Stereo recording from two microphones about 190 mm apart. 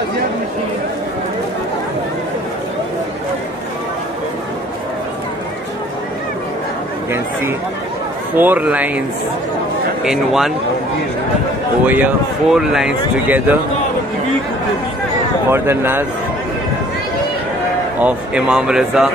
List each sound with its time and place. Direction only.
8.4 s speech: 10° right (ahead or behind)
10.0 s a man's voice: centre (ahead or behind)
11.8 s speech: 10° right (ahead or behind)
15.5 s speech: 15° right (ahead or behind)
17.9 s a man's voice: 5° right (ahead or behind)